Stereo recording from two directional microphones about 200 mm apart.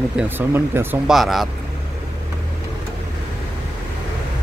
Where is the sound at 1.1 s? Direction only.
Centre (ahead or behind).